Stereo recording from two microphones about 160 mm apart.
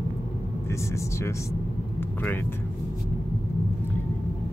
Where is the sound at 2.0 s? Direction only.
15° left (ahead or behind).